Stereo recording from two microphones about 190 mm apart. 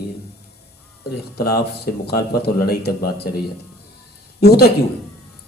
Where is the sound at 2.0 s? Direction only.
55° left (ahead or behind).